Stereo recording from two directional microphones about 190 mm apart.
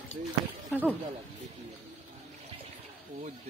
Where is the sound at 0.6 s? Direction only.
5° left (ahead or behind).